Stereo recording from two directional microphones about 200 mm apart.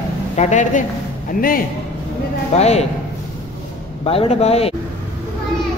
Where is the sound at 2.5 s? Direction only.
35° left (ahead or behind).